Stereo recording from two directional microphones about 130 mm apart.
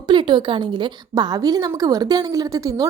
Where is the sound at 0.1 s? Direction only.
40° right (ahead or behind).